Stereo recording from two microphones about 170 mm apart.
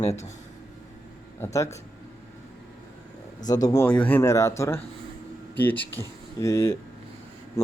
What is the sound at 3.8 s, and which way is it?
Speech, 10° left (ahead or behind).